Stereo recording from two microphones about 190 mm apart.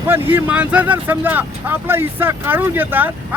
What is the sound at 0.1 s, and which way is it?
Speech, 10° right (ahead or behind).